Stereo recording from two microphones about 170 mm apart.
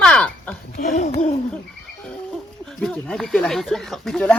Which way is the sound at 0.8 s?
50° left (ahead or behind).